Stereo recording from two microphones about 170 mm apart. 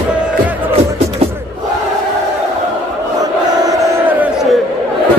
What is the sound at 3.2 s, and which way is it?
Crowd, 20° right (ahead or behind).